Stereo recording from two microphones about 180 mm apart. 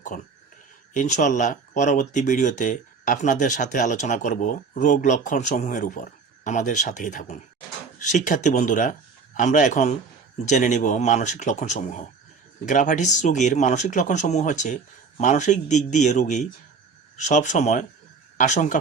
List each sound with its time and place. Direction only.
0.1 s speech: 50° left (ahead or behind)